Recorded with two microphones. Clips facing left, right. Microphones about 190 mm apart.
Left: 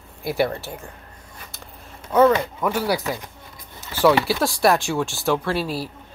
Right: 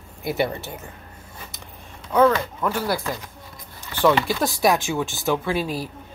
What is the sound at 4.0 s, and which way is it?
Speech, 5° left (ahead or behind).